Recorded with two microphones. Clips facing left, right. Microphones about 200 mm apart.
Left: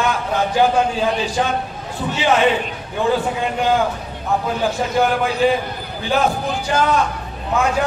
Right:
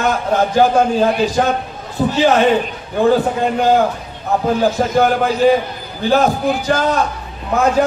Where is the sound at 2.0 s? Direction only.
40° right (ahead or behind).